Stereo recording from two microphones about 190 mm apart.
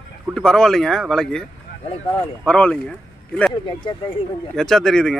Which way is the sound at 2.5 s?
5° left (ahead or behind).